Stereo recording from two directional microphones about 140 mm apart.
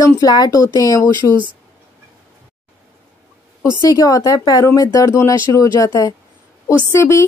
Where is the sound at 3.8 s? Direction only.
25° left (ahead or behind).